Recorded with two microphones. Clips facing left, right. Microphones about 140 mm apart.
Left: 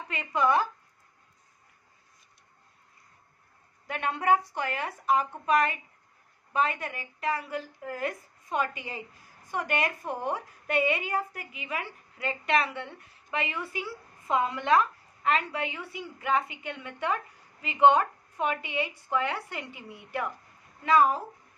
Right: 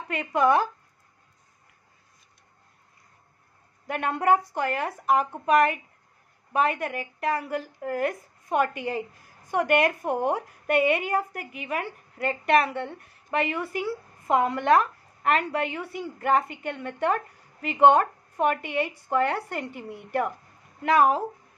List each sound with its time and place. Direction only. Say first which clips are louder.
0.1 s a woman's voice: right 4 dB; 50° right (ahead or behind)
3.8 s a woman's voice: right 4 dB; 50° right (ahead or behind)
20.8 s speech: right 2 dB; 65° right (ahead or behind)